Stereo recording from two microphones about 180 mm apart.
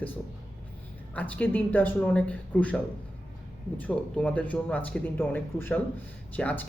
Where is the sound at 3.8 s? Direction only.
5° left (ahead or behind).